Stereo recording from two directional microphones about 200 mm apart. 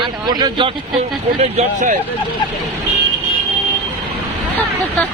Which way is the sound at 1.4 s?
35° right (ahead or behind).